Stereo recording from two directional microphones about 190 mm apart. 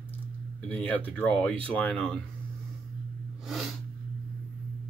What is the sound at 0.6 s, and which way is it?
Speech, 10° left (ahead or behind).